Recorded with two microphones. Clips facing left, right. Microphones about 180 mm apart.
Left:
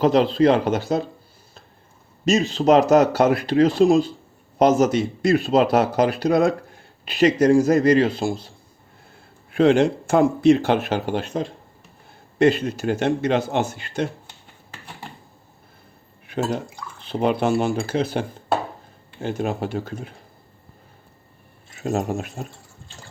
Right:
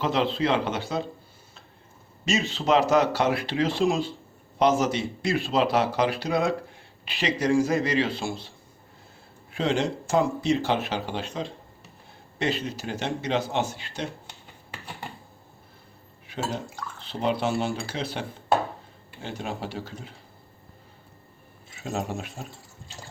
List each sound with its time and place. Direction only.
0.0 s speech: 40° left (ahead or behind)
2.2 s speech: 40° left (ahead or behind)
9.5 s speech: 55° left (ahead or behind)
16.2 s drip: 55° left (ahead or behind)
17.1 s speech: 55° left (ahead or behind)
21.7 s speech: 45° left (ahead or behind)